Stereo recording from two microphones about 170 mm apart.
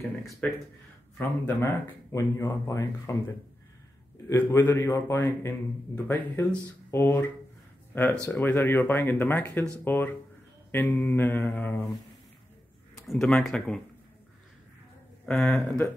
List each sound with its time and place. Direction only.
1.1 s a man's voice: 10° left (ahead or behind)
4.3 s a man's voice: 15° left (ahead or behind)
12.9 s speech: centre (ahead or behind)
15.2 s speech: 5° left (ahead or behind)